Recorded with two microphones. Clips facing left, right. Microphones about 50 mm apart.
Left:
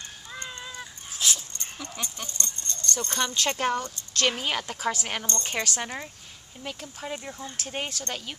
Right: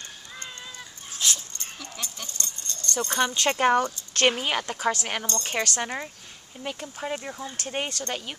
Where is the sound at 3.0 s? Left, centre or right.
Right.